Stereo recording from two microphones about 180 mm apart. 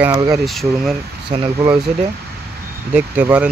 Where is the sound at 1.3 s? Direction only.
25° right (ahead or behind).